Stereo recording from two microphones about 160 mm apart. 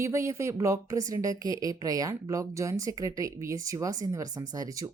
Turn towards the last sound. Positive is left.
turn(degrees=-20)  # may be behind; listen again after turning